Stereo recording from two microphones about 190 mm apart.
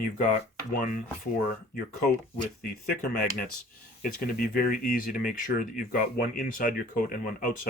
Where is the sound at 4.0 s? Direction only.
50° left (ahead or behind).